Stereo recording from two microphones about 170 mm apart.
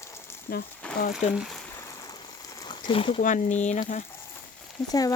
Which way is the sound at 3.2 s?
50° left (ahead or behind).